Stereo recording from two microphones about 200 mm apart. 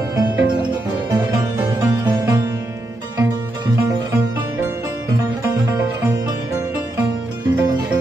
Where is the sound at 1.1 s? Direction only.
15° right (ahead or behind).